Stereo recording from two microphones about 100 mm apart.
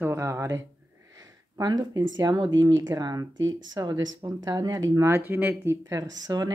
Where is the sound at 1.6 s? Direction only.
45° right (ahead or behind).